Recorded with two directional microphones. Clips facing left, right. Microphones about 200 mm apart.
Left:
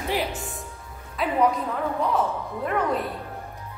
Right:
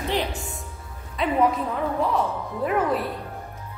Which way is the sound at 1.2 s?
Centre (ahead or behind).